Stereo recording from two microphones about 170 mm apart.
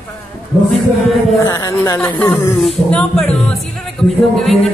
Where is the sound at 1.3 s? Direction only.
20° left (ahead or behind).